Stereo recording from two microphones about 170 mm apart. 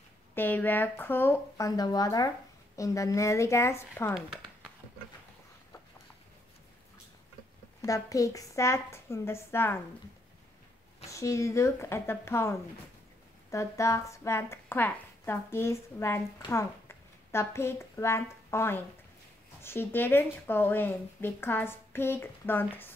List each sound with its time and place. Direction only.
0.3 s speech: 10° left (ahead or behind)
7.8 s speech: 20° left (ahead or behind)
11.1 s a woman's voice: 20° left (ahead or behind)